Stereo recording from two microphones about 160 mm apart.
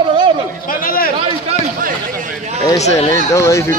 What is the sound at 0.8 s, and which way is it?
Speech, 65° left (ahead or behind).